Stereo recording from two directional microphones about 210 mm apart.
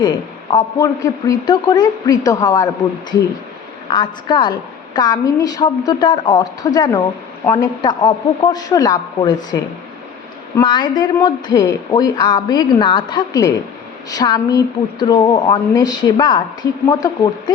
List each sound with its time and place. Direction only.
0.0 s a woman's voice: 20° left (ahead or behind)
3.8 s a woman's voice: 20° left (ahead or behind)
10.6 s a woman's voice: 20° left (ahead or behind)